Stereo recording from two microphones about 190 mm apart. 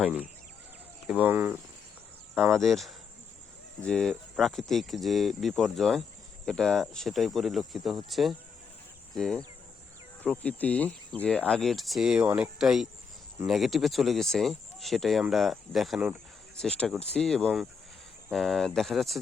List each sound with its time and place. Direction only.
0.0 s speech: 5° right (ahead or behind)
2.5 s speech: centre (ahead or behind)